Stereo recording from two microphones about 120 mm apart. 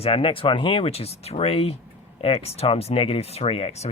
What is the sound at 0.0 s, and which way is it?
Speech, 50° left (ahead or behind).